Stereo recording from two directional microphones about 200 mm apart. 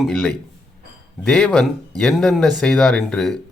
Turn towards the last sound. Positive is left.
turn(degrees=5)  # may be behind; listen again after turning